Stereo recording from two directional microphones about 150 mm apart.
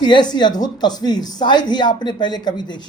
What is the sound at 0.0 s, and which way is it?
Speech, 30° left (ahead or behind).